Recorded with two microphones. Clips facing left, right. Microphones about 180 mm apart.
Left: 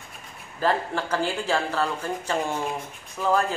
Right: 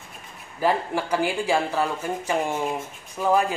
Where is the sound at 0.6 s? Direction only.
10° right (ahead or behind).